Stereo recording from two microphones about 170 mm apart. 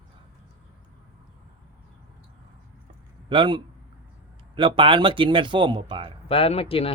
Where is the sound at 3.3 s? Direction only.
30° right (ahead or behind).